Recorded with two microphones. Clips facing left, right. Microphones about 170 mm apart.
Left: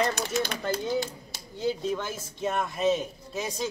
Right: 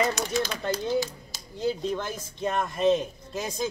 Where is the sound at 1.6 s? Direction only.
5° left (ahead or behind).